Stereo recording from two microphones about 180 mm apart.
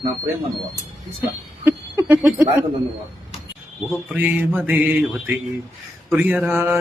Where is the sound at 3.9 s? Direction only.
10° right (ahead or behind).